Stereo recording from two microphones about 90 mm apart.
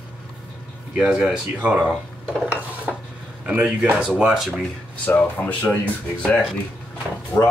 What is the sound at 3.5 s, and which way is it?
Speech, 10° right (ahead or behind).